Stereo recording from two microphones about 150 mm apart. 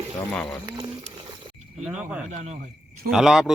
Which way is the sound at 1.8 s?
10° right (ahead or behind).